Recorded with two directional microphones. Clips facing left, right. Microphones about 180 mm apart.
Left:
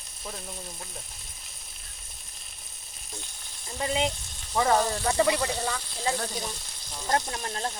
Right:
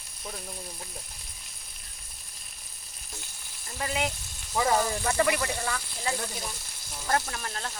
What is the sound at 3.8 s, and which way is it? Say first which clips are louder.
Speech: left 3 dB; 25° left (ahead or behind).